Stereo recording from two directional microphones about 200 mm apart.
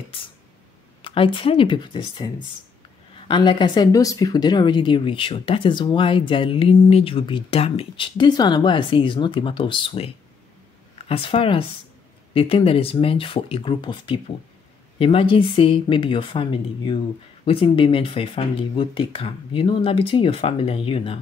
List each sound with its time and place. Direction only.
0.1 s speech: 30° left (ahead or behind)